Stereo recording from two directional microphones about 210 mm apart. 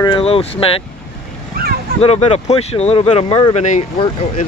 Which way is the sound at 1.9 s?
30° left (ahead or behind).